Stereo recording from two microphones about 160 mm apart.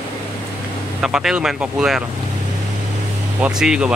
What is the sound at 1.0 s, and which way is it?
Speech, 5° right (ahead or behind).